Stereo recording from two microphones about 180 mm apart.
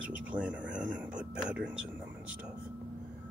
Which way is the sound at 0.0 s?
10° right (ahead or behind).